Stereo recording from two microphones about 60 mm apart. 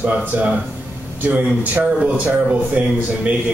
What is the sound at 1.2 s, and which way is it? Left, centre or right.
A man's voice, right.